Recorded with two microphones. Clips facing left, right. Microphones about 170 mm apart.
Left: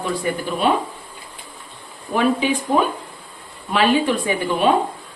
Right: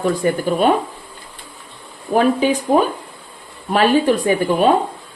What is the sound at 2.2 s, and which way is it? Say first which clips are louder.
A woman's voice: right 3 dB; 45° right (ahead or behind).